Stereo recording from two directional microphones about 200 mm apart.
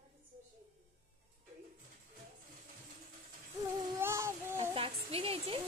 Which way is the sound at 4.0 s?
15° right (ahead or behind).